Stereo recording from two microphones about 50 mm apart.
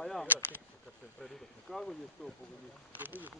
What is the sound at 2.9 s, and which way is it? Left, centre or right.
Speech, right.